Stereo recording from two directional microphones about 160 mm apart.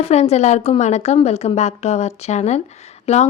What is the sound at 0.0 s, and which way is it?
A woman's voice, 40° left (ahead or behind).